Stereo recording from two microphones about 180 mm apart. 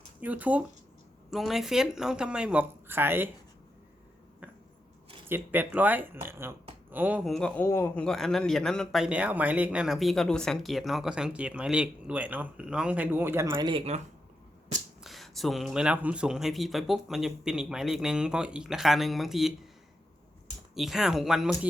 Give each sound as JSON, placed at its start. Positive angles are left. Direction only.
{"t": 0.2, "sound": "a man's voice", "side_deg": -10}
{"t": 5.3, "sound": "a man's voice", "side_deg": -10}
{"t": 13.5, "sound": "speech", "side_deg": -25}
{"t": 15.0, "sound": "a man's voice", "side_deg": 0}
{"t": 20.7, "sound": "a man's voice", "side_deg": 0}